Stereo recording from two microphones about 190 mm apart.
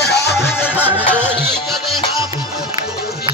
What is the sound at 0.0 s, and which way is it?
Music, 60° left (ahead or behind).